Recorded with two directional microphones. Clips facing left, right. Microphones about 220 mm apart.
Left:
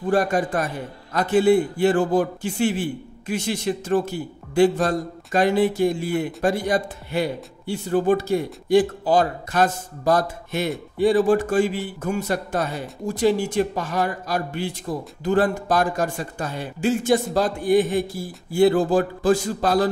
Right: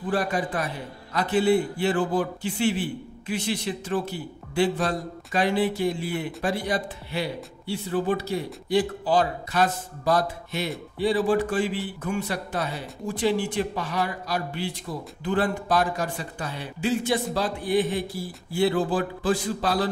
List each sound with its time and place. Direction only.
0.1 s a man's voice: 45° left (ahead or behind)